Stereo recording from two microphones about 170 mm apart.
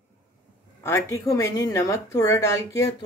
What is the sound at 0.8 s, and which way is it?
Speech, 15° left (ahead or behind).